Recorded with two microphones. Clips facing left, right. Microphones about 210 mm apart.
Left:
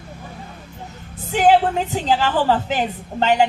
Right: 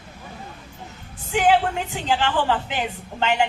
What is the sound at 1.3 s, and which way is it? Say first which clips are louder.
A woman's voice: left 4 dB; 40° left (ahead or behind).